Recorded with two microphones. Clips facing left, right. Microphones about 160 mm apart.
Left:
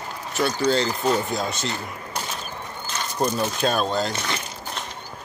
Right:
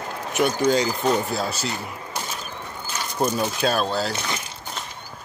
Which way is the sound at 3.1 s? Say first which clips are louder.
Right 1 dB; 5° right (ahead or behind).